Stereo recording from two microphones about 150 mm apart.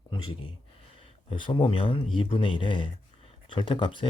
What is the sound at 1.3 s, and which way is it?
Speech, 35° left (ahead or behind).